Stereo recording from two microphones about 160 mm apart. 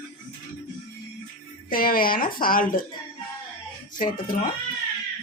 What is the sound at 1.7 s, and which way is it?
A woman's voice, 65° left (ahead or behind).